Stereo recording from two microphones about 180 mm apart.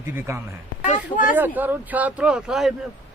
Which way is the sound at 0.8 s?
45° left (ahead or behind).